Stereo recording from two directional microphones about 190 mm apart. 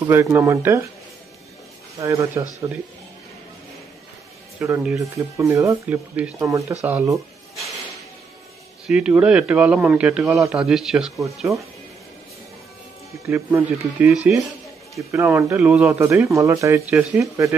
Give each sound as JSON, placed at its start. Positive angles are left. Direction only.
{"t": 0.0, "sound": "speech", "side_deg": -15}
{"t": 2.0, "sound": "speech", "side_deg": -15}
{"t": 4.6, "sound": "speech", "side_deg": -10}
{"t": 8.8, "sound": "speech", "side_deg": -5}
{"t": 11.5, "sound": "speech", "side_deg": -15}
{"t": 13.3, "sound": "speech", "side_deg": -10}